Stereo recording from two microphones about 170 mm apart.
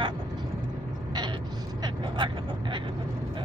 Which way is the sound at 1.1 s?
25° right (ahead or behind).